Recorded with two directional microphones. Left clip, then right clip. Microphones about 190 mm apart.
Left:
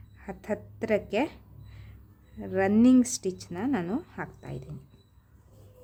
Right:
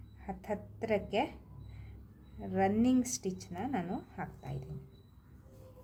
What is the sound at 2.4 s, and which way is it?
Speech, 30° left (ahead or behind).